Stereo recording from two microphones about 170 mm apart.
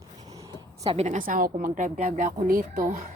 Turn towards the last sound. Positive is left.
turn(degrees=-55)  # may be behind; listen again after turning